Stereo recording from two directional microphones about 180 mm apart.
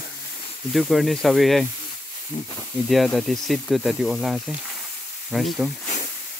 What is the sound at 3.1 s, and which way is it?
Speech, centre (ahead or behind).